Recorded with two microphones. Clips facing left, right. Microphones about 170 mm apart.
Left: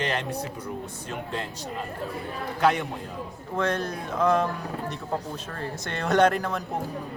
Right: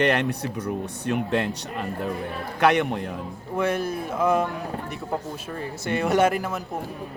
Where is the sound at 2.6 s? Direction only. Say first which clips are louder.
Right 4 dB; 70° right (ahead or behind).